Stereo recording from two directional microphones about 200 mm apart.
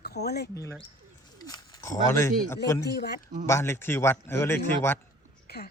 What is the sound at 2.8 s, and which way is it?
Speech, 55° left (ahead or behind).